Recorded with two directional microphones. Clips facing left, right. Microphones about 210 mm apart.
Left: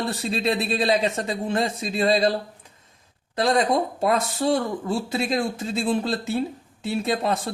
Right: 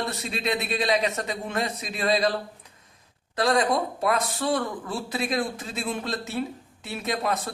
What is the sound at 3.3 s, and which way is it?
Speech, 25° left (ahead or behind).